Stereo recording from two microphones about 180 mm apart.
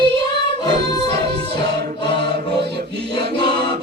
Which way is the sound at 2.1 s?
70° right (ahead or behind).